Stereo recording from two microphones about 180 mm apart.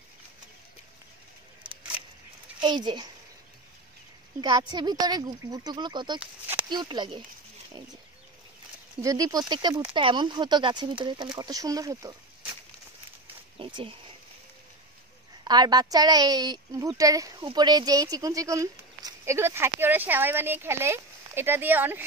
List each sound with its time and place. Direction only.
2.6 s a woman's voice: 25° right (ahead or behind)
4.4 s a woman's voice: 25° right (ahead or behind)
6.1 s a sound: 10° right (ahead or behind)
6.7 s a woman's voice: 25° right (ahead or behind)
9.0 s a woman's voice: 20° right (ahead or behind)
13.6 s speech: 25° right (ahead or behind)
15.4 s a woman's voice: 20° right (ahead or behind)